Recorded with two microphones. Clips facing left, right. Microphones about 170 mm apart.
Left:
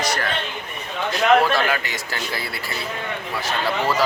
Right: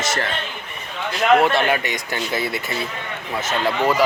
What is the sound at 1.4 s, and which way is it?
A man's voice, 25° right (ahead or behind).